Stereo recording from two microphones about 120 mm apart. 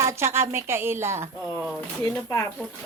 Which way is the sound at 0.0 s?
20° right (ahead or behind).